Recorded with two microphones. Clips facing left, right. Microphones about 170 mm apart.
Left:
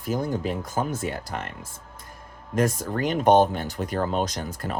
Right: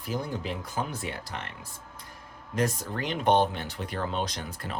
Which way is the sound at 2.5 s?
45° left (ahead or behind).